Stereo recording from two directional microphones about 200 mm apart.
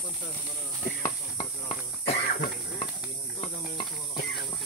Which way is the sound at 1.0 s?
10° left (ahead or behind).